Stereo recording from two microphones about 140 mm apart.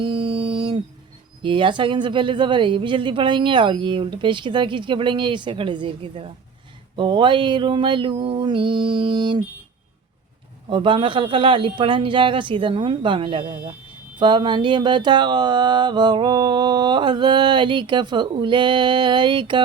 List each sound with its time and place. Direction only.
0.0 s a sound: 35° right (ahead or behind)
1.4 s speech: 35° right (ahead or behind)
10.7 s speech: 35° right (ahead or behind)